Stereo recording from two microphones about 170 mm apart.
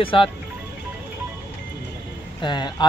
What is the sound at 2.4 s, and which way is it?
Speech, 25° left (ahead or behind).